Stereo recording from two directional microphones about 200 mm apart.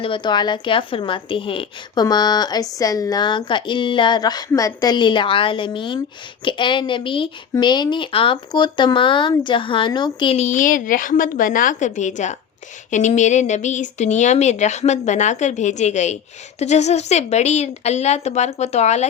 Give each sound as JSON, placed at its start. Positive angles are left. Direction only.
{"t": 0.0, "sound": "a woman's voice", "side_deg": 25}